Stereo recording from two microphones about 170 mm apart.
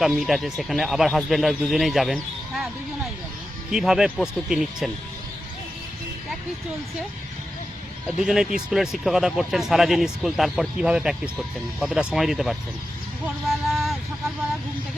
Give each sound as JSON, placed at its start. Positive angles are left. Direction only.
{"t": 0.0, "sound": "speech", "side_deg": 0}
{"t": 3.7, "sound": "speech", "side_deg": -5}
{"t": 8.2, "sound": "speech", "side_deg": -5}
{"t": 13.2, "sound": "a sound", "side_deg": 0}